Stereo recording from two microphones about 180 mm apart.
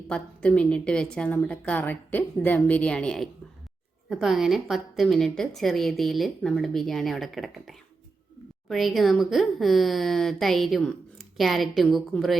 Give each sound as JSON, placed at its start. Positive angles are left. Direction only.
{"t": 0.1, "sound": "a woman's voice", "side_deg": 5}